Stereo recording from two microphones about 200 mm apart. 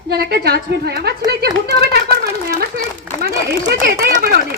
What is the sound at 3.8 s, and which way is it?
Speech, 50° right (ahead or behind).